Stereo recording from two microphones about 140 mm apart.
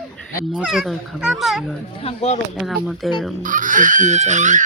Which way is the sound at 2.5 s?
Centre (ahead or behind).